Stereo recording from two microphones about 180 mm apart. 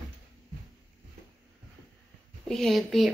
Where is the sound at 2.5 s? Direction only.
Centre (ahead or behind).